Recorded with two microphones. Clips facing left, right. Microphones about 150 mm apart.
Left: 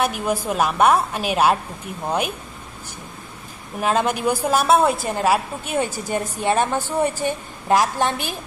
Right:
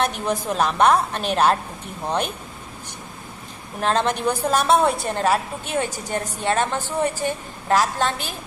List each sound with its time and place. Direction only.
0.0 s a woman's voice: 5° left (ahead or behind)
3.8 s a woman's voice: 10° left (ahead or behind)